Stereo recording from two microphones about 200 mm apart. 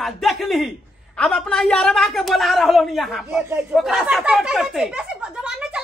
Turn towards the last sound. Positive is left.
turn(degrees=-5)  # may be behind; listen again after turning